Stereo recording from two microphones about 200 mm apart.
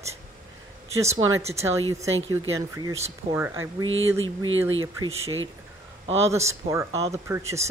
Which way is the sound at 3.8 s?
75° right (ahead or behind).